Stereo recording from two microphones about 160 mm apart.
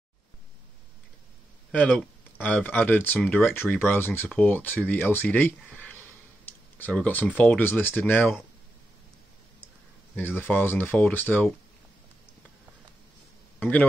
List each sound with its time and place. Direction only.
1.7 s speech: 10° left (ahead or behind)
10.1 s speech: 15° left (ahead or behind)
13.6 s speech: 10° left (ahead or behind)